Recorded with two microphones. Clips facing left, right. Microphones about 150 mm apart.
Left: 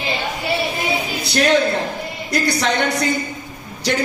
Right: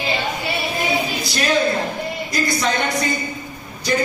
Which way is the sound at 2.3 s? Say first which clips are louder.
Left 4 dB; 70° left (ahead or behind).